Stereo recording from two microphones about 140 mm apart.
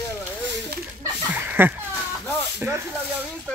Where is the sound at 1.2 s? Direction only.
15° right (ahead or behind).